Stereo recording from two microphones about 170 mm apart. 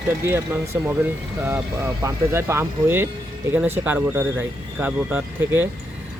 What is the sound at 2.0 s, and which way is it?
Speech, 15° right (ahead or behind).